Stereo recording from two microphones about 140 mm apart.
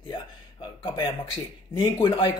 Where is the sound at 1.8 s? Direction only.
35° left (ahead or behind).